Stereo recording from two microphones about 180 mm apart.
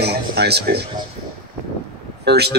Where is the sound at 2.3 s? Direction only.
65° right (ahead or behind).